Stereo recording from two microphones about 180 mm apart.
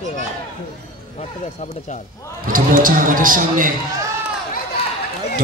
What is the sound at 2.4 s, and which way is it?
Speech, 50° right (ahead or behind).